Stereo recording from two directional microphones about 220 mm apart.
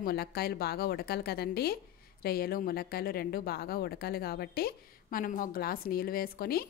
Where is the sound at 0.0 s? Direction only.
45° left (ahead or behind).